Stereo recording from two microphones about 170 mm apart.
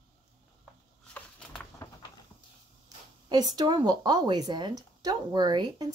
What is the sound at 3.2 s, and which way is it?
Speech, 25° right (ahead or behind).